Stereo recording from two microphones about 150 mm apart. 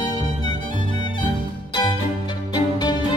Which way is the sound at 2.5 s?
30° left (ahead or behind).